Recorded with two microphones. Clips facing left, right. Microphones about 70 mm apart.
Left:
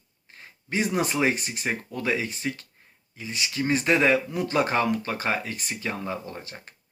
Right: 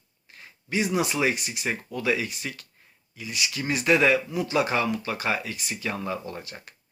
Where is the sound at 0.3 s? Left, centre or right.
Left.